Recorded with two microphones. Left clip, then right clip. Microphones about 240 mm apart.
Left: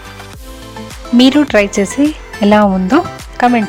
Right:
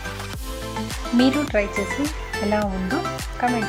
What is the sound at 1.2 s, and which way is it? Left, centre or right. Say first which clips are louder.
Speech: left 11 dB; left.